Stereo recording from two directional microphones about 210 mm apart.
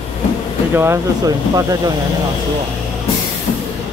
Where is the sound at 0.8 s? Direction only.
15° right (ahead or behind).